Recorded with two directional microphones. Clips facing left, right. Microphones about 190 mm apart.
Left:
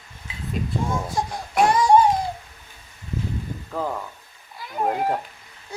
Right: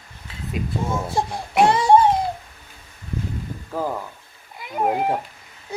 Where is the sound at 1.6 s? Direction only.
25° right (ahead or behind).